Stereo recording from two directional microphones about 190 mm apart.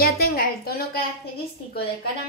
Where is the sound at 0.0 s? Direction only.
50° left (ahead or behind).